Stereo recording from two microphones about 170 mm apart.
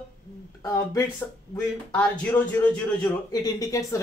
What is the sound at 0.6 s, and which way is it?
Speech, 20° left (ahead or behind).